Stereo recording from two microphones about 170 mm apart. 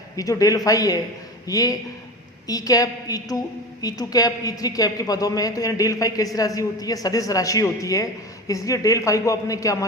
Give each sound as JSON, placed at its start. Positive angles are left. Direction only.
{"t": 0.2, "sound": "a woman's voice", "side_deg": 20}